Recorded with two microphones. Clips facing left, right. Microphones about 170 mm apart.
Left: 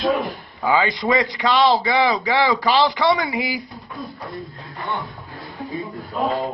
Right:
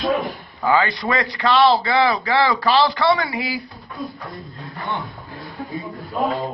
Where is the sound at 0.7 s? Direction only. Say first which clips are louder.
Even; 15° left (ahead or behind).